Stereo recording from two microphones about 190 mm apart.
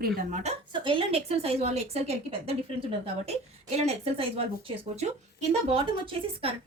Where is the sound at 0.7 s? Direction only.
25° right (ahead or behind).